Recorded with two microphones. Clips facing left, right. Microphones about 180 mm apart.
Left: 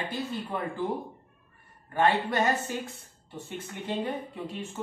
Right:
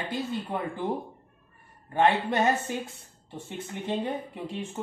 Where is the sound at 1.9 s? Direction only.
20° right (ahead or behind).